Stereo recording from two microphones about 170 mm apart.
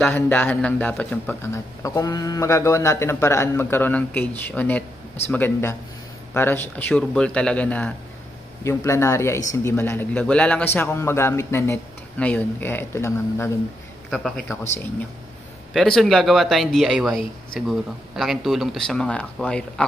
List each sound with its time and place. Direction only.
0.0 s speech: 10° left (ahead or behind)
14.1 s speech: centre (ahead or behind)
15.7 s speech: centre (ahead or behind)